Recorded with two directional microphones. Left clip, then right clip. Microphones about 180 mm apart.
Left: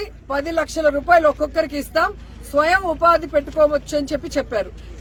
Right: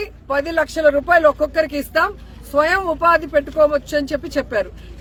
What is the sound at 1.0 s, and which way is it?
Speech, 30° right (ahead or behind).